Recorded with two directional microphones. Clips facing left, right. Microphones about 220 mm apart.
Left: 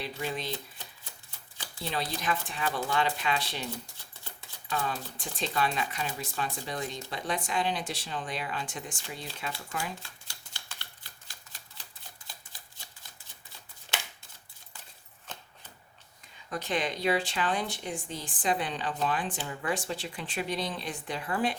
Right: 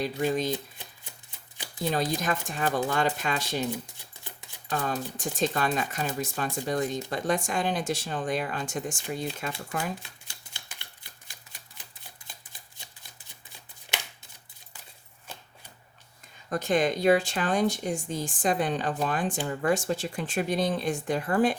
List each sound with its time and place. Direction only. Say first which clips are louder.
0.0 s speech: right 8 dB; 45° right (ahead or behind)
1.8 s speech: right 6 dB; 45° right (ahead or behind)
4.7 s speech: right 3 dB; 45° right (ahead or behind)
10.0 s typewriter: right 1 dB; 20° right (ahead or behind)
15.3 s shuffling cards: even; 10° right (ahead or behind)
16.5 s speech: right 7 dB; 45° right (ahead or behind)